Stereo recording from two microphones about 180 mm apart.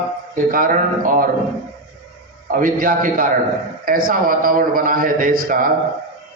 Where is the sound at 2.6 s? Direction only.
50° right (ahead or behind).